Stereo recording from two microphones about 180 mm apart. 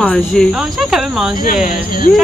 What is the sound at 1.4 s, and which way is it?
Speech, 50° left (ahead or behind).